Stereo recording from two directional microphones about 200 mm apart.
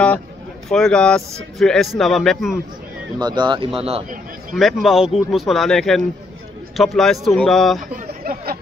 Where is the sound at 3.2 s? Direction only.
20° right (ahead or behind).